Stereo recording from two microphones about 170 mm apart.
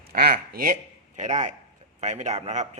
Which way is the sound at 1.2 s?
45° right (ahead or behind).